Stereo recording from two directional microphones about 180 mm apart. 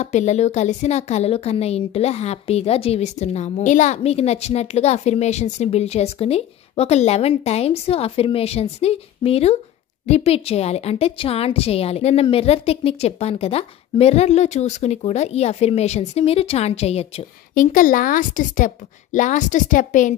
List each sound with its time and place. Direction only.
0.0 s speech: 40° left (ahead or behind)
17.6 s a woman's voice: 50° left (ahead or behind)